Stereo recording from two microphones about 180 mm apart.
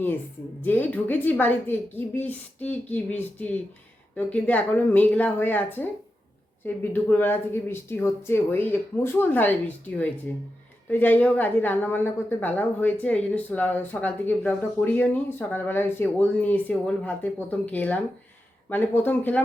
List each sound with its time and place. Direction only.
0.6 s a woman's voice: 10° left (ahead or behind)
6.9 s a woman's voice: 10° left (ahead or behind)